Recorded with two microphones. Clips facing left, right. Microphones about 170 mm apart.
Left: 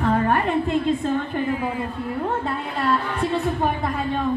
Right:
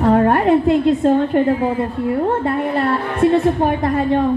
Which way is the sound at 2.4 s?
70° right (ahead or behind).